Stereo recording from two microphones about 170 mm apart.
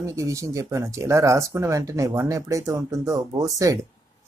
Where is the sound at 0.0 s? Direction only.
20° right (ahead or behind).